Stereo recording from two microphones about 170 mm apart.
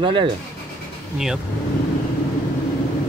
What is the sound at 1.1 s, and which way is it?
Speech, 5° right (ahead or behind).